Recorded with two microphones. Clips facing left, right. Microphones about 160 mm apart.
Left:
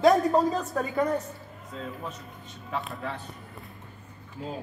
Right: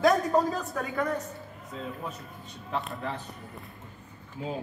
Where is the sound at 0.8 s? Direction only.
20° left (ahead or behind).